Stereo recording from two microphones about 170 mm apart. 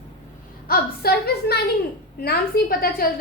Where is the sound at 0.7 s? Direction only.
65° left (ahead or behind).